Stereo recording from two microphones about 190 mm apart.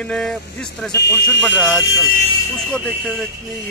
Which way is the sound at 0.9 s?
65° left (ahead or behind).